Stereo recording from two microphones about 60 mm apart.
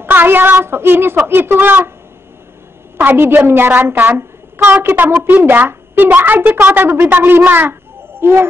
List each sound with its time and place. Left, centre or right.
0.0 s a woman's voice: right
3.0 s a woman's voice: right
8.2 s a sound: right